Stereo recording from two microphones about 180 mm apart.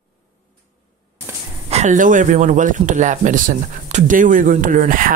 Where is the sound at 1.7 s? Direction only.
40° right (ahead or behind).